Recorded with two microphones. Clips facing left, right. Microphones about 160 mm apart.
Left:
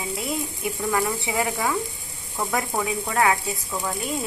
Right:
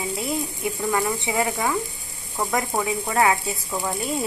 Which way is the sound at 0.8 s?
5° right (ahead or behind).